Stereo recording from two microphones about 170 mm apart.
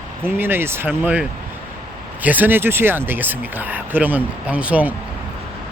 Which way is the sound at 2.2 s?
10° right (ahead or behind).